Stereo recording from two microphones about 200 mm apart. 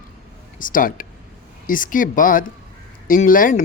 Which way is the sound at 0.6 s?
45° left (ahead or behind).